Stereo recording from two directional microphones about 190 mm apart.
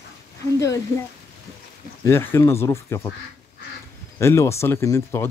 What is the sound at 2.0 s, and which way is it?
Speech, 15° left (ahead or behind).